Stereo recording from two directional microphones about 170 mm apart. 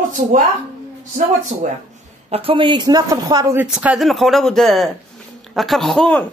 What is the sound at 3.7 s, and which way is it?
A woman's voice, 5° right (ahead or behind).